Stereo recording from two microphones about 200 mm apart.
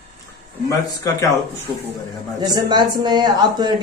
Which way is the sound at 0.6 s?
15° left (ahead or behind).